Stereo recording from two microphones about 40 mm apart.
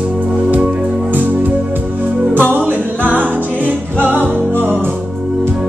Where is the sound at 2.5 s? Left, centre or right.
Right.